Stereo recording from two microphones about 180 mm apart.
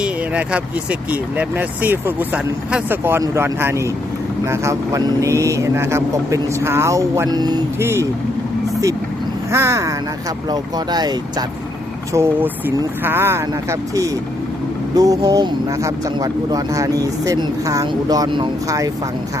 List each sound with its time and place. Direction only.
0.0 s speech: 5° right (ahead or behind)
9.5 s speech: 15° right (ahead or behind)